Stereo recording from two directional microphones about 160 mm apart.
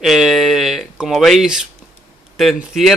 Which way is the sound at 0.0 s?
Centre (ahead or behind).